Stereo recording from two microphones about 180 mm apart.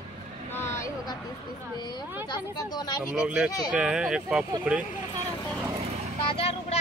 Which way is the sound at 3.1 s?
5° right (ahead or behind).